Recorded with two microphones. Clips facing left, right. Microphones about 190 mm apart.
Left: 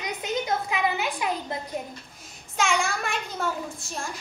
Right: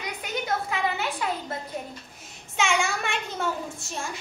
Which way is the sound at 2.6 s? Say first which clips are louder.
Even; centre (ahead or behind).